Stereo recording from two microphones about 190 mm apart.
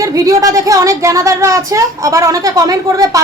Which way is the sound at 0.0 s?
20° right (ahead or behind).